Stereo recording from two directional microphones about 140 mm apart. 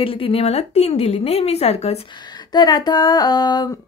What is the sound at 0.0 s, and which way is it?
A woman's voice, 40° left (ahead or behind).